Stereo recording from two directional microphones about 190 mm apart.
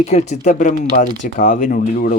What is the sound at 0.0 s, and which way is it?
Speech, 35° left (ahead or behind).